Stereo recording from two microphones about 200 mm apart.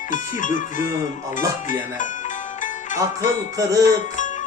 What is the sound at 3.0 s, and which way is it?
Music, 15° right (ahead or behind).